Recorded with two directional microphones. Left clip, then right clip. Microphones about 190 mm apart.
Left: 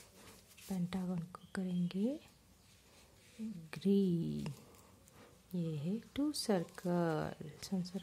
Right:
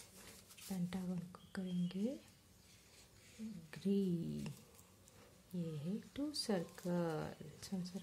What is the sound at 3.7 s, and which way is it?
Speech, 25° left (ahead or behind).